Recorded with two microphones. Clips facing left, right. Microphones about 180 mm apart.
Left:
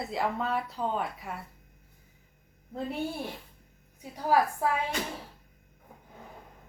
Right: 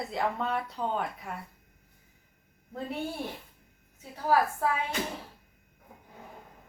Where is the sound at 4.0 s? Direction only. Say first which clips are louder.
Even; 15° left (ahead or behind).